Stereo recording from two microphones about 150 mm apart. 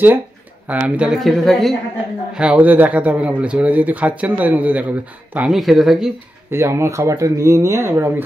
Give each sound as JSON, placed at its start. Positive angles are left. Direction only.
{"t": 0.7, "sound": "speech", "side_deg": -10}
{"t": 6.5, "sound": "speech", "side_deg": -20}